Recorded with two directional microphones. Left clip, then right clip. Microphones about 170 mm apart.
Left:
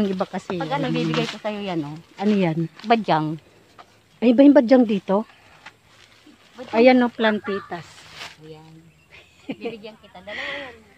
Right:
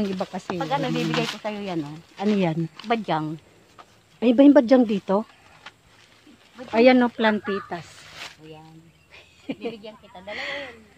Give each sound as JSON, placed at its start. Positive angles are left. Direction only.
{"t": 0.0, "sound": "speech", "side_deg": 25}
{"t": 1.4, "sound": "speech", "side_deg": 40}
{"t": 2.2, "sound": "speech", "side_deg": 10}
{"t": 2.9, "sound": "speech", "side_deg": 80}
{"t": 4.2, "sound": "speech", "side_deg": 15}
{"t": 6.7, "sound": "speech", "side_deg": 0}
{"t": 8.2, "sound": "a sound", "side_deg": 35}
{"t": 9.1, "sound": "a sound", "side_deg": 0}
{"t": 10.2, "sound": "speech", "side_deg": 0}